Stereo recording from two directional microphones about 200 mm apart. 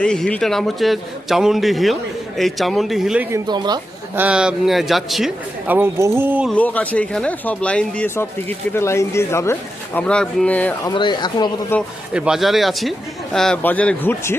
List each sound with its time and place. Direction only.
0.0 s a man's voice: 5° left (ahead or behind)
3.3 s speech: 20° right (ahead or behind)
4.1 s a man's voice: 5° right (ahead or behind)
6.5 s speech: 5° left (ahead or behind)
10.9 s speech: 25° left (ahead or behind)
12.1 s a man's voice: 5° right (ahead or behind)